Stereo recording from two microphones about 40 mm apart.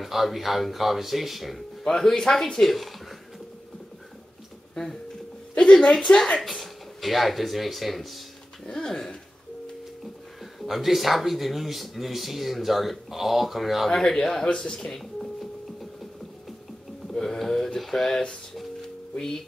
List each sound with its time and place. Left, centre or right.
0.0 s speech: centre
1.9 s speech: centre
2.6 s speech: centre
5.5 s a woman's voice: left
6.4 s speech: centre
8.6 s speech: centre
10.4 s speech: centre
13.8 s speech: centre
14.5 s speech: left
15.8 s a sound: centre
17.1 s a sound: centre
17.7 s speech: centre